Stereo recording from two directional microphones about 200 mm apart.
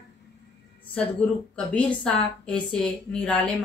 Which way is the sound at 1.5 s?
5° left (ahead or behind).